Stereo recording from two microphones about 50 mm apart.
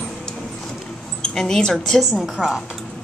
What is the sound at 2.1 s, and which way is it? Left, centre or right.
Speech, centre.